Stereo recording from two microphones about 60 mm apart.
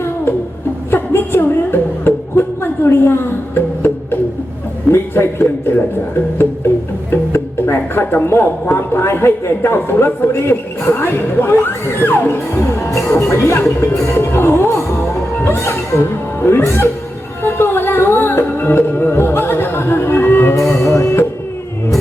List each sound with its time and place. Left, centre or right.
0.9 s a sound: left
2.8 s music: left
4.9 s a man's voice: left
7.1 s a man's voice: left
10.5 s a man's voice: left
13.1 s a man's voice: left
15.4 s music: left
20.7 s music: left